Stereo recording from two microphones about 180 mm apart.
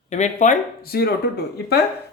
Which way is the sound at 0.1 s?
40° left (ahead or behind).